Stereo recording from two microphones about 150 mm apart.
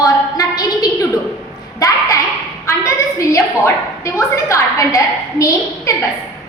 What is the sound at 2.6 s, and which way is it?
A woman's voice, 20° left (ahead or behind).